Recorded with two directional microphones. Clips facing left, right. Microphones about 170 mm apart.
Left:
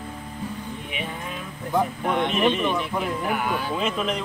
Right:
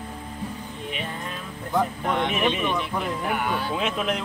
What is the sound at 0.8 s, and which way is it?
Music, 10° left (ahead or behind).